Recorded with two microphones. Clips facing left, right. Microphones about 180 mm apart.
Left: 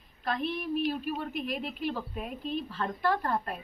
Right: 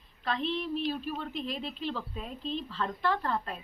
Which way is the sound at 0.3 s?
10° left (ahead or behind).